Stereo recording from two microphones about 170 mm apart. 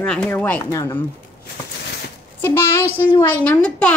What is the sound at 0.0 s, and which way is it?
Speech, 5° left (ahead or behind).